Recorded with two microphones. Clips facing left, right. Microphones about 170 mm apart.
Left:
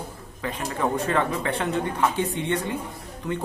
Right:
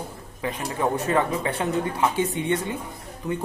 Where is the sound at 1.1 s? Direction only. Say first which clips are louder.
Right 1 dB; 15° right (ahead or behind).